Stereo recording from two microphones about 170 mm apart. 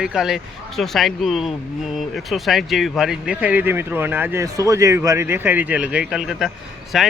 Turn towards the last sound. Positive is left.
turn(degrees=0)  # may be behind; listen again after turning